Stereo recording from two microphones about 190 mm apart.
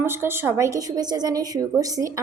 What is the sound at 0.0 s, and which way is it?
A woman's voice, 10° right (ahead or behind).